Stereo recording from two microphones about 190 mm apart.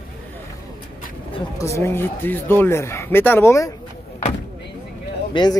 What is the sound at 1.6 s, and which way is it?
Speech, 15° left (ahead or behind).